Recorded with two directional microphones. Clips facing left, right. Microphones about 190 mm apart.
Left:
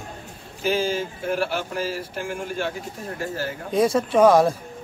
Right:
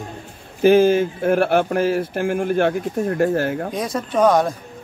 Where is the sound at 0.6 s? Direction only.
55° right (ahead or behind).